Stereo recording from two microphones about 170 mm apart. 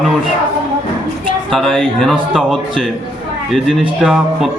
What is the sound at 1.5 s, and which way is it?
A man's voice, centre (ahead or behind).